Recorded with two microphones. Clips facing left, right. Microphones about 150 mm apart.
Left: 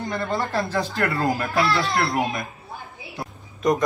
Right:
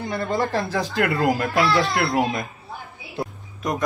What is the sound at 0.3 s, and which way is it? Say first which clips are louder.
Speech: right 2 dB; 15° right (ahead or behind).